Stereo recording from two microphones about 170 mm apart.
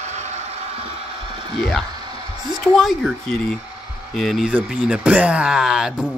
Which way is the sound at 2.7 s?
Centre (ahead or behind).